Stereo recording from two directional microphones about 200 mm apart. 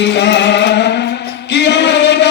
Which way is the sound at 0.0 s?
60° left (ahead or behind).